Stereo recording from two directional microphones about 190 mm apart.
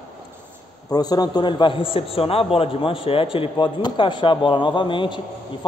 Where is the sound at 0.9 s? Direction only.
20° left (ahead or behind).